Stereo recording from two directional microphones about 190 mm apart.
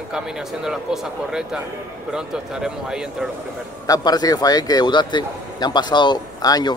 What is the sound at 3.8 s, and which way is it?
Speech, 20° left (ahead or behind).